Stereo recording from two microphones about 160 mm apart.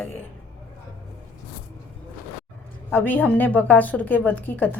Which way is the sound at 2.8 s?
10° left (ahead or behind).